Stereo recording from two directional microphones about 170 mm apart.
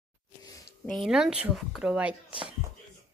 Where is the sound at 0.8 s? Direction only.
Centre (ahead or behind).